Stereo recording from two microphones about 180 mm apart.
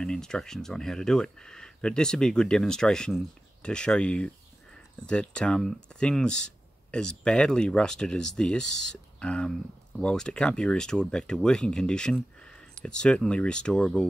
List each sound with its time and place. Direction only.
0.0 s speech: 5° left (ahead or behind)